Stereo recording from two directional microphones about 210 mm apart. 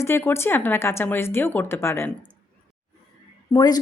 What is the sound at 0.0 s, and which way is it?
A woman's voice, 10° left (ahead or behind).